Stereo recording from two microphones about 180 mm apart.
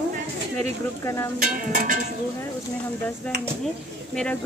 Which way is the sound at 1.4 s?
45° right (ahead or behind).